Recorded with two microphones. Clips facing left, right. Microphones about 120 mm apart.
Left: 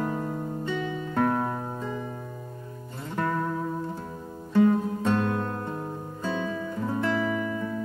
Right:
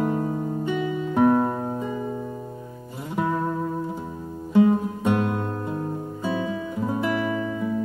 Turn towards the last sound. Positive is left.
turn(degrees=-15)  # may be behind; listen again after turning